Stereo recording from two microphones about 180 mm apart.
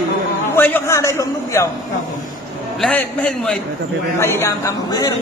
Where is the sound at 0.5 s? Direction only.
10° left (ahead or behind).